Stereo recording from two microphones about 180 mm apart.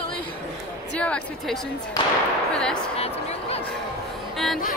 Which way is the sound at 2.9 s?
35° left (ahead or behind).